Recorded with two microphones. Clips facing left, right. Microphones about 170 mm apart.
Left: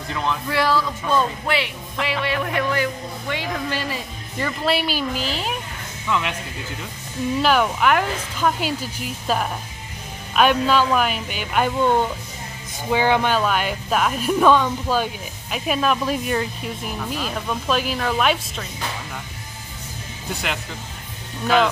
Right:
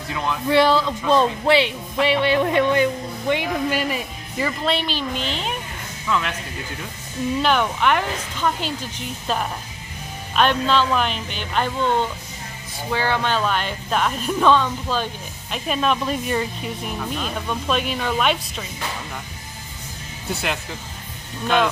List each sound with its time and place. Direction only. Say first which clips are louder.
0.5 s speech: right 6 dB; 25° right (ahead or behind)
4.6 s speech: left 1 dB; 5° left (ahead or behind)
6.0 s speech: even; 15° left (ahead or behind)
7.4 s speech: left 2 dB; 5° left (ahead or behind)